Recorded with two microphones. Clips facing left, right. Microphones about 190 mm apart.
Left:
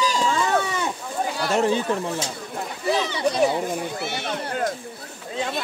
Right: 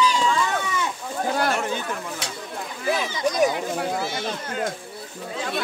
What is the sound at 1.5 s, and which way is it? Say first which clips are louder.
Speech: left 6 dB; 30° left (ahead or behind).